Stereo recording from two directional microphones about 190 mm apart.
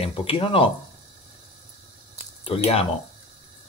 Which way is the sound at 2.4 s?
30° left (ahead or behind).